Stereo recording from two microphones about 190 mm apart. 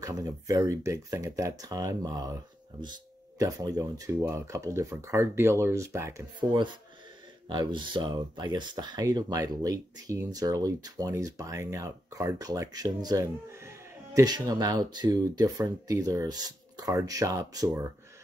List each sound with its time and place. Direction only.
0.0 s speech: 20° right (ahead or behind)
3.3 s speech: 20° right (ahead or behind)